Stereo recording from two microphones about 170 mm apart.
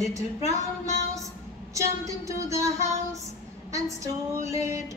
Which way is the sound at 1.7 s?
20° right (ahead or behind).